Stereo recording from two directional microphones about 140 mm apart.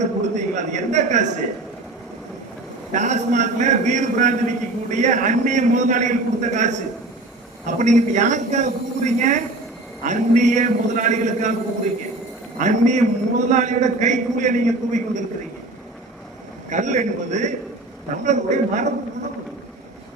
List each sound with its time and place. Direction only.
0.0 s a man's voice: 60° right (ahead or behind)
2.9 s a man's voice: 60° right (ahead or behind)
12.5 s a man's voice: 60° right (ahead or behind)
16.6 s a man's voice: 60° right (ahead or behind)